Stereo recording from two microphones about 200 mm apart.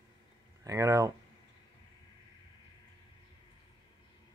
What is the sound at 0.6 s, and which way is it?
Speech, 15° right (ahead or behind).